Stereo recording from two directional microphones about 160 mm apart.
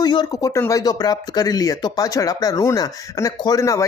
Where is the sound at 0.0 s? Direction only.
25° left (ahead or behind).